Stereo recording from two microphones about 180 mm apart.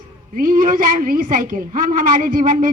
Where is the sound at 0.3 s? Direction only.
50° right (ahead or behind).